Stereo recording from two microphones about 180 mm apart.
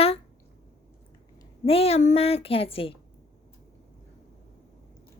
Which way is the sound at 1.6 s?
35° left (ahead or behind).